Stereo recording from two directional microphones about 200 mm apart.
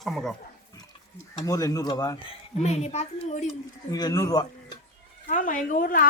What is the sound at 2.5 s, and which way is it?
Speech, 35° left (ahead or behind).